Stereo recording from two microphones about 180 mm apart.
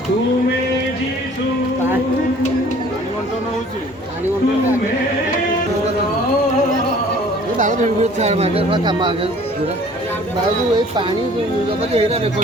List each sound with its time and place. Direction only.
7.6 s speech: 45° right (ahead or behind); by 9.3 s 25° right (ahead or behind)
11.9 s speech: 35° right (ahead or behind)